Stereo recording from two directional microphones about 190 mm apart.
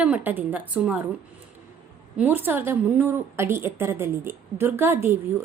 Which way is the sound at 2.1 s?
10° right (ahead or behind).